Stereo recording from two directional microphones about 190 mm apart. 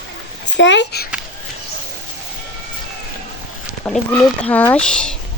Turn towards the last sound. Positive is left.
turn(degrees=5)  # may be behind; listen again after turning